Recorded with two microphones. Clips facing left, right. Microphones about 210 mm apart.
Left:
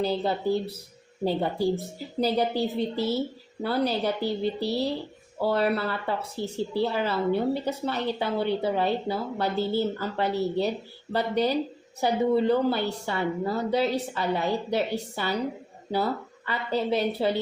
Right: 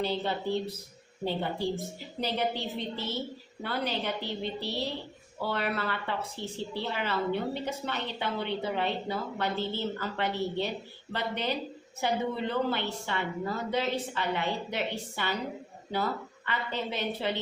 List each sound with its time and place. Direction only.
0.0 s speech: 40° left (ahead or behind)
16.5 s speech: 35° left (ahead or behind)